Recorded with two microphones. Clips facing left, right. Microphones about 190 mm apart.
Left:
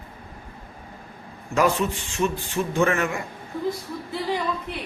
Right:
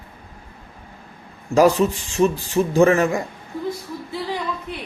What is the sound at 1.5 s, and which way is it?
A man's voice, 35° right (ahead or behind).